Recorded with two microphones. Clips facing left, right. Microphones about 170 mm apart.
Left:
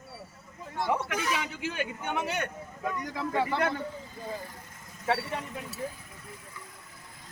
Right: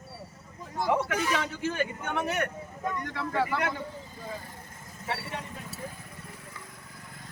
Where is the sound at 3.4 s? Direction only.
30° left (ahead or behind).